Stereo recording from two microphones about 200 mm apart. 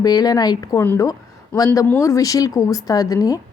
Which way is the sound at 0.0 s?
20° left (ahead or behind).